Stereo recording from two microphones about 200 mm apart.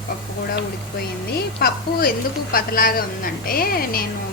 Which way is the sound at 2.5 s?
45° left (ahead or behind).